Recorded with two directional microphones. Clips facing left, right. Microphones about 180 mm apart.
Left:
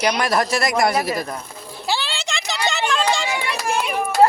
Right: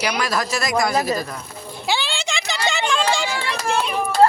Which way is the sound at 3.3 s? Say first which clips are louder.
Even; 15° left (ahead or behind).